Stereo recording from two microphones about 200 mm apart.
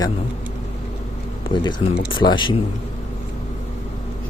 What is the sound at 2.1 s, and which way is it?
Speech, 25° left (ahead or behind).